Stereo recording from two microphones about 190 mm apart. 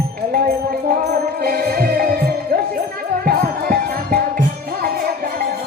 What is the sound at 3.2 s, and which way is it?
Music, 45° right (ahead or behind).